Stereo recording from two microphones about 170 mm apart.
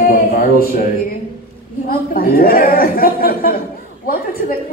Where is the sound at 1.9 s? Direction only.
60° left (ahead or behind).